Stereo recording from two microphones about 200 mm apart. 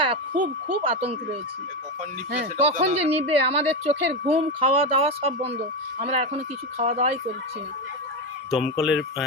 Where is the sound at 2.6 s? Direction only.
30° right (ahead or behind).